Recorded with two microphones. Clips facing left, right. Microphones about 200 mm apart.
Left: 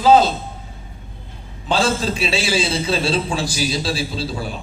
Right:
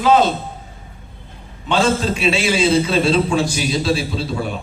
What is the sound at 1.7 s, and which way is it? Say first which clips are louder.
A man's voice: right 2 dB; 35° left (ahead or behind).